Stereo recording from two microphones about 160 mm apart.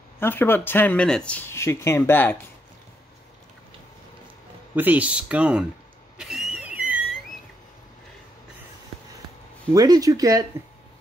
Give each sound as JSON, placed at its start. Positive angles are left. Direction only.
{"t": 0.2, "sound": "speech", "side_deg": 15}
{"t": 4.7, "sound": "speech", "side_deg": -10}
{"t": 6.1, "sound": "a sound", "side_deg": 0}
{"t": 9.7, "sound": "speech", "side_deg": -20}